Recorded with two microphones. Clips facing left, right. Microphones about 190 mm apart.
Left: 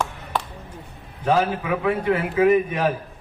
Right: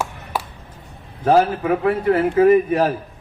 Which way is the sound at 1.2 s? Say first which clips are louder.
Right 5 dB; 45° right (ahead or behind).